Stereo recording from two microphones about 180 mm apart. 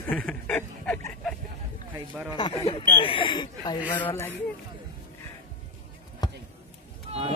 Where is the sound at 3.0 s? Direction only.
30° left (ahead or behind).